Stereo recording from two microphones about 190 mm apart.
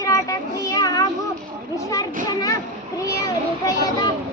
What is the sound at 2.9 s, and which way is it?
A child's voice, 15° left (ahead or behind).